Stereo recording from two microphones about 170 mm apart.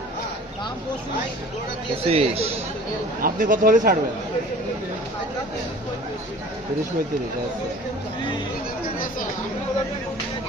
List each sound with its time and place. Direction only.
2.0 s speech: 35° right (ahead or behind)
3.2 s speech: 55° right (ahead or behind)